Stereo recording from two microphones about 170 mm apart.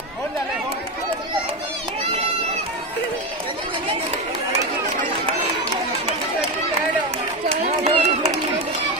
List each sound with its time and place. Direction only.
7.8 s run: 35° right (ahead or behind)